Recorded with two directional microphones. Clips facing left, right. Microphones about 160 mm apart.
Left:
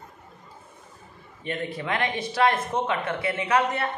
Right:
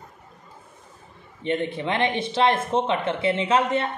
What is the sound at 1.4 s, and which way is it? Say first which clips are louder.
Speech: right 5 dB; 25° right (ahead or behind).